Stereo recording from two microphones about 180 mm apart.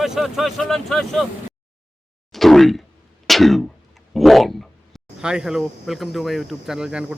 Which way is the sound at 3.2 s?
Centre (ahead or behind).